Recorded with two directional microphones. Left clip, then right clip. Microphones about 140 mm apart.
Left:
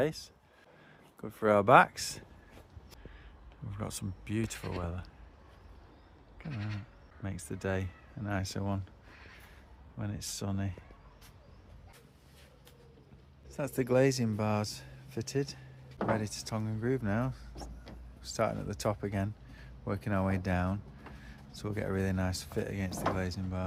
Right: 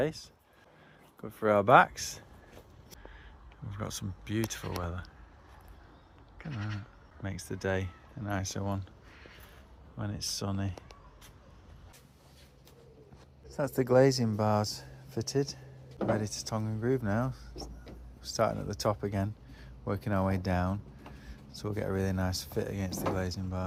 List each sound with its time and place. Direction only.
0.0 s speech: 35° left (ahead or behind)
3.7 s speech: 25° left (ahead or behind)
7.2 s speech: 20° left (ahead or behind)
10.0 s speech: 20° left (ahead or behind)
13.5 s speech: centre (ahead or behind); by 23.6 s 15° left (ahead or behind)